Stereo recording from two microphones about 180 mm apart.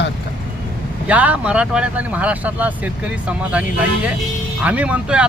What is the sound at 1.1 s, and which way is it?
Speech, 10° right (ahead or behind).